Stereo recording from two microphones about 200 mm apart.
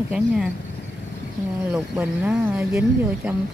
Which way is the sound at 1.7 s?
5° right (ahead or behind).